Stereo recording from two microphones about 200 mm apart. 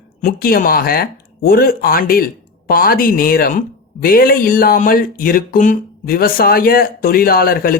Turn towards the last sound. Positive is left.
turn(degrees=45)  # may be behind; listen again after turning